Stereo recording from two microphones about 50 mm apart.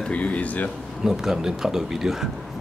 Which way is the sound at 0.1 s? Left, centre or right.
Left.